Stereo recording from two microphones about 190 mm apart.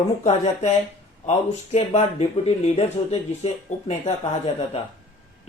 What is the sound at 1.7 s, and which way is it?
Speech, 35° left (ahead or behind).